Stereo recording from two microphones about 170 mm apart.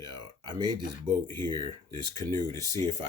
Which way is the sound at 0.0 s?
25° right (ahead or behind).